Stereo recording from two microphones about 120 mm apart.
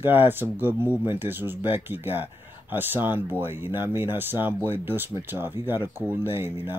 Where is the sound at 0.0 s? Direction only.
15° right (ahead or behind).